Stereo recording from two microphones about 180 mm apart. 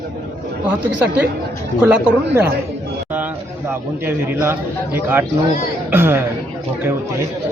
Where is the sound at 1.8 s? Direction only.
10° right (ahead or behind).